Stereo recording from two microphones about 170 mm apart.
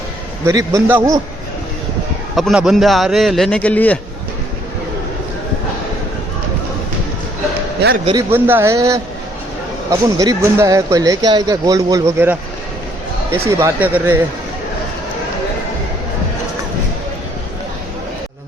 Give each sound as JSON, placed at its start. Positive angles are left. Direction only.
{"t": 0.4, "sound": "speech", "side_deg": -20}
{"t": 2.3, "sound": "a man's voice", "side_deg": 0}
{"t": 7.8, "sound": "a man's voice", "side_deg": -75}
{"t": 8.1, "sound": "a man's voice", "side_deg": -10}
{"t": 13.5, "sound": "a man's voice", "side_deg": -15}